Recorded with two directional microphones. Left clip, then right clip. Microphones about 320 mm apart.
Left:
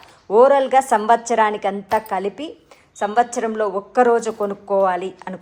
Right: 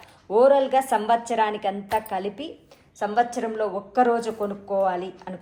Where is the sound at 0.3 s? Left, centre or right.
Left.